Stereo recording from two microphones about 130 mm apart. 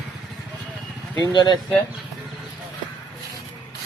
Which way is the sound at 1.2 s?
35° left (ahead or behind).